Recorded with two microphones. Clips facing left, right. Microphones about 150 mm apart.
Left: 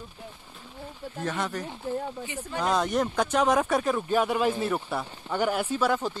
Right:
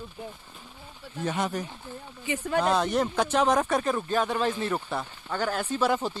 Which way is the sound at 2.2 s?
90° right.